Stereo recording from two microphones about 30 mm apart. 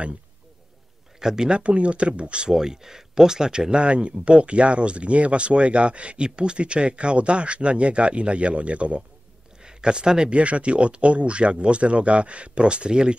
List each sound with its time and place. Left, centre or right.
1.2 s speech: right
1.6 s speech: right
2.5 s speech: centre
3.8 s speech: right
9.6 s speech: right
10.3 s speech: right